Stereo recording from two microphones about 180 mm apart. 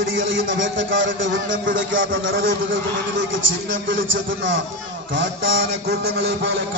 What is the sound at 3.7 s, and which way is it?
Speech, 90° right.